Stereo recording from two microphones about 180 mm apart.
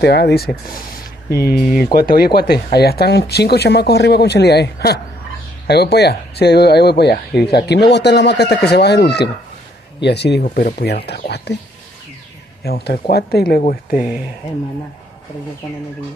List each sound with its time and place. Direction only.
0.0 s speech: 70° left (ahead or behind)
10.4 s speech: 55° left (ahead or behind)
12.6 s speech: 65° left (ahead or behind)
13.6 s speech: 50° left (ahead or behind)